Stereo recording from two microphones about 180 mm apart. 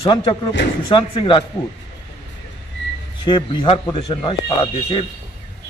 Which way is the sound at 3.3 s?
30° left (ahead or behind).